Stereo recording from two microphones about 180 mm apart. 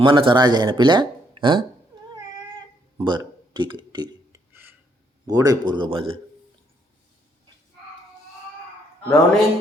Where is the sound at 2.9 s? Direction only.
20° right (ahead or behind).